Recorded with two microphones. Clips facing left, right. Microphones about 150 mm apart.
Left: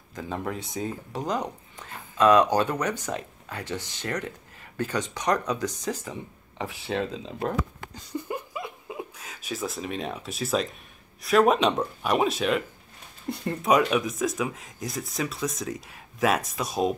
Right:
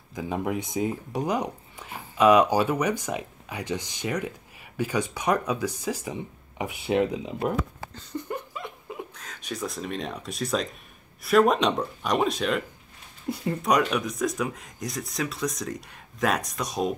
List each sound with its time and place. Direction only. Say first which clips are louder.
0.1 s speech: right 3 dB; 10° right (ahead or behind)
7.9 s a sound: left 1 dB; 10° left (ahead or behind)
11.2 s speech: even; centre (ahead or behind)